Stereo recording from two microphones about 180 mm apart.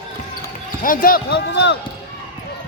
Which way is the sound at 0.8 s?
50° left (ahead or behind).